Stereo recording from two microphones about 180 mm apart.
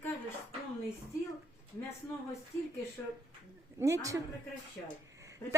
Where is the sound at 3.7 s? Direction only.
15° right (ahead or behind).